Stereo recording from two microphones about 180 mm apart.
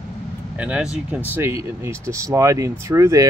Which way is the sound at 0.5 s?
5° right (ahead or behind).